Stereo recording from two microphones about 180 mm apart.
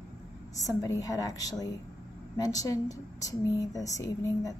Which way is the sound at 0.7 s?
20° left (ahead or behind).